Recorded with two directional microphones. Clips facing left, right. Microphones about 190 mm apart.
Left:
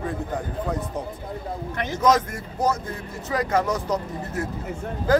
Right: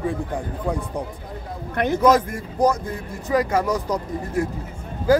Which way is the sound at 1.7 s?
55° right (ahead or behind).